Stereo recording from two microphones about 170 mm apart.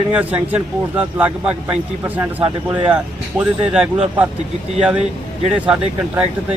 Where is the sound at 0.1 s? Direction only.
10° right (ahead or behind).